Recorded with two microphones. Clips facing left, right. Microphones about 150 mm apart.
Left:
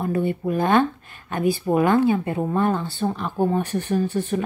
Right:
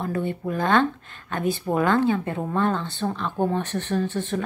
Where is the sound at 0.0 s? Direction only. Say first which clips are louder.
Left 4 dB; 10° left (ahead or behind).